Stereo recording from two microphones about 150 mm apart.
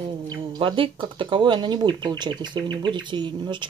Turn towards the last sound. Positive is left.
turn(degrees=-30)  # may be behind; listen again after turning